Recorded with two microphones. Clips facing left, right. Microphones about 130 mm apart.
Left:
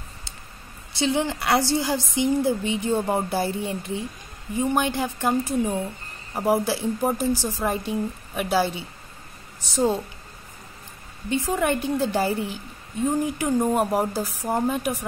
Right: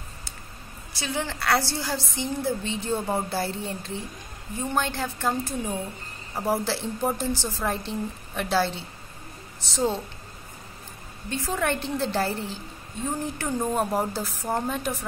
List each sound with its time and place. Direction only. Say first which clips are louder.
0.9 s a woman's voice: left 7 dB; 20° left (ahead or behind)
11.2 s a woman's voice: left 4 dB; 15° left (ahead or behind)